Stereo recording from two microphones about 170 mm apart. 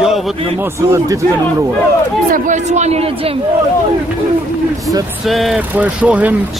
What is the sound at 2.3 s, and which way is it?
Speech, 45° right (ahead or behind).